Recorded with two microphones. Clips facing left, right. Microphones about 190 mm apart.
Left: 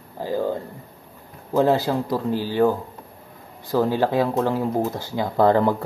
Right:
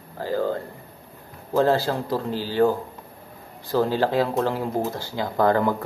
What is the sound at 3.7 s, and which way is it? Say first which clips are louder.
Speech: left 1 dB; 15° left (ahead or behind).